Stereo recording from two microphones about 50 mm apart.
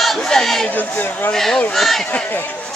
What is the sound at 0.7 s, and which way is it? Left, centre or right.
Speech, left.